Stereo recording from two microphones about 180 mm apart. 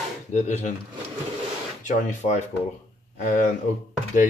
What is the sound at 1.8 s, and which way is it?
Speech, 45° left (ahead or behind).